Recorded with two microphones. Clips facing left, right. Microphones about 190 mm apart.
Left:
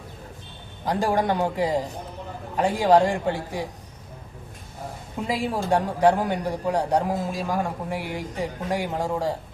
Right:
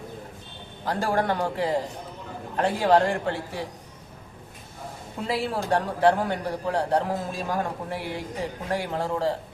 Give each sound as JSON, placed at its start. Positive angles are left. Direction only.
{"t": 0.9, "sound": "a man's voice", "side_deg": 15}
{"t": 5.2, "sound": "a man's voice", "side_deg": 15}